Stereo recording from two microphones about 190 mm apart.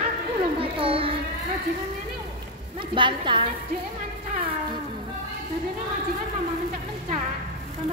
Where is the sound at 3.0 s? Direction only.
25° right (ahead or behind).